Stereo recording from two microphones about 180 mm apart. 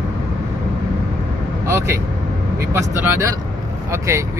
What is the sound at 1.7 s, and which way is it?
Speech, 15° right (ahead or behind).